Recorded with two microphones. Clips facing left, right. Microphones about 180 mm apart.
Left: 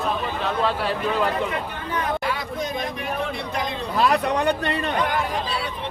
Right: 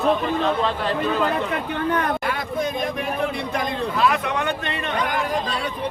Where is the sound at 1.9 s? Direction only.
55° right (ahead or behind).